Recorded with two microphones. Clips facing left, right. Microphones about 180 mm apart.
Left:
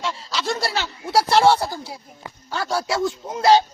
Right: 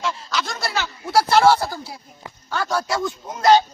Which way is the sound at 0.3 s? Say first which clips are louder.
Left 4 dB; 30° left (ahead or behind).